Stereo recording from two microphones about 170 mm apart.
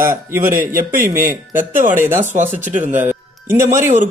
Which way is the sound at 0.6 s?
55° right (ahead or behind).